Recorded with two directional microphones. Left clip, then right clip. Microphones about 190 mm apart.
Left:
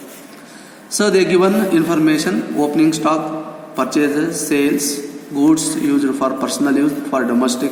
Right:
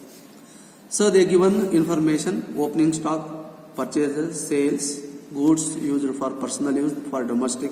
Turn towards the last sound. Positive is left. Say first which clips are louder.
# left 8 dB
turn(degrees=45)  # may be behind; listen again after turning